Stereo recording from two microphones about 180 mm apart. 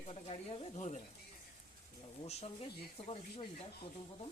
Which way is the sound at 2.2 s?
35° left (ahead or behind).